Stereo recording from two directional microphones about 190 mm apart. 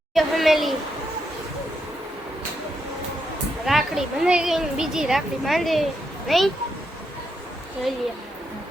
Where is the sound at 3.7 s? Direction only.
Centre (ahead or behind).